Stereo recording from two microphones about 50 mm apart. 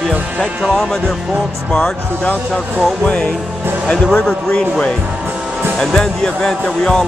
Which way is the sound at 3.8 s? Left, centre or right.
Centre.